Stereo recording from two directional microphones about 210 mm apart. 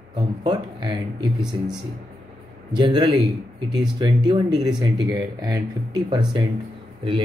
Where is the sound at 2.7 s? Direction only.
20° right (ahead or behind).